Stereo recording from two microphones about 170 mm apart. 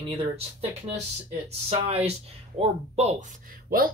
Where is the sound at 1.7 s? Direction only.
35° right (ahead or behind).